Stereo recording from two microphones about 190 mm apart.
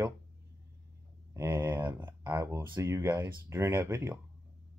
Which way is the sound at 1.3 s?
15° right (ahead or behind).